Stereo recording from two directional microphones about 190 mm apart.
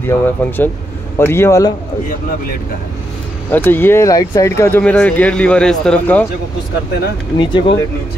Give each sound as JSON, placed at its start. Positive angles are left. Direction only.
{"t": 0.0, "sound": "speech", "side_deg": 10}
{"t": 3.5, "sound": "speech", "side_deg": 10}
{"t": 7.3, "sound": "speech", "side_deg": 25}